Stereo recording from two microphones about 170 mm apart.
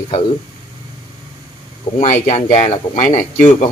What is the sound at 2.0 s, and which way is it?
Speech, 40° left (ahead or behind).